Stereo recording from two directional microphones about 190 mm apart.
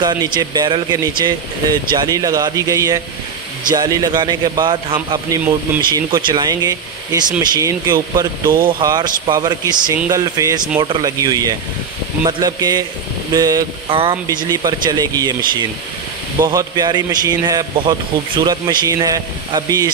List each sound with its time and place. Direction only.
0.0 s a man's voice: 20° right (ahead or behind)
16.3 s a man's voice: 20° right (ahead or behind)